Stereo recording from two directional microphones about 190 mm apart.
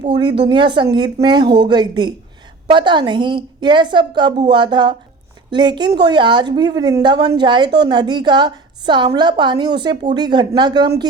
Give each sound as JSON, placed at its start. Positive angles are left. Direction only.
{"t": 0.0, "sound": "a woman's voice", "side_deg": -25}